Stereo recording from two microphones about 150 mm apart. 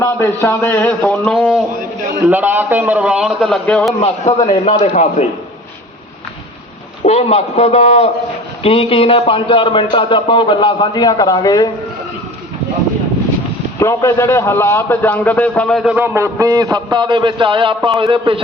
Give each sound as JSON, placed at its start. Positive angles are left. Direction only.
{"t": 0.0, "sound": "a man's voice", "side_deg": 15}
{"t": 2.2, "sound": "a man's voice", "side_deg": -10}
{"t": 4.0, "sound": "a man's voice", "side_deg": 30}
{"t": 4.8, "sound": "a man's voice", "side_deg": 50}
{"t": 7.0, "sound": "a man's voice", "side_deg": 45}
{"t": 13.7, "sound": "a man's voice", "side_deg": 20}
{"t": 16.0, "sound": "a man's voice", "side_deg": -15}